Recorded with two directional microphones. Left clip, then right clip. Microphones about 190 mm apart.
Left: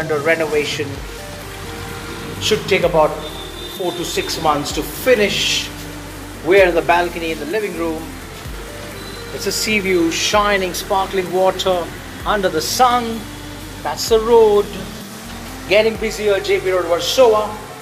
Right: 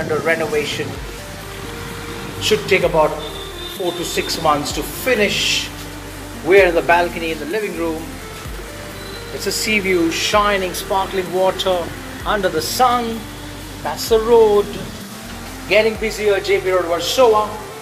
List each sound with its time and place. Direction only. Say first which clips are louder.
0.2 s a man's voice: left 3 dB; 10° left (ahead or behind)
2.5 s speech: even; centre (ahead or behind)
4.5 s speech: even; 5° left (ahead or behind)
5.3 s speech: even; 40° left (ahead or behind)
6.4 s speech: even; centre (ahead or behind)
9.4 s a man's voice: even; 5° right (ahead or behind)
15.7 s speech: left 1 dB; centre (ahead or behind)